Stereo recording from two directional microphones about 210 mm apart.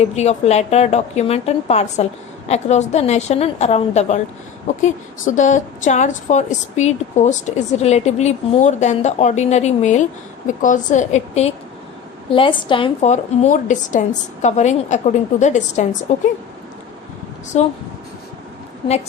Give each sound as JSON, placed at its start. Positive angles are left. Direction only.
{"t": 0.0, "sound": "a woman's voice", "side_deg": 30}
{"t": 17.5, "sound": "a woman's voice", "side_deg": 35}